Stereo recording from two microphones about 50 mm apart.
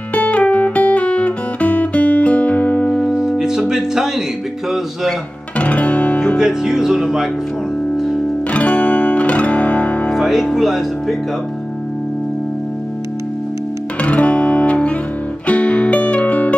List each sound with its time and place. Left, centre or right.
0.1 s guitar: left
3.1 s music: centre
5.6 s music: left
6.3 s speech: centre
8.5 s music: left
10.0 s speech: centre
14.0 s music: left